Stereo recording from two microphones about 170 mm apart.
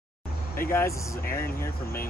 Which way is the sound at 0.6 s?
15° left (ahead or behind).